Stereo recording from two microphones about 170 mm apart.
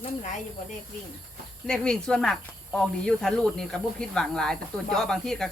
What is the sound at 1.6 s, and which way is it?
Speech, 5° left (ahead or behind).